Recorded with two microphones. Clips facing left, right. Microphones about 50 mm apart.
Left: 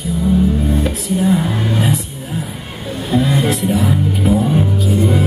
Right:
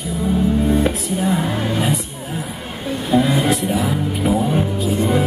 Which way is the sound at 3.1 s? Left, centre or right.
Centre.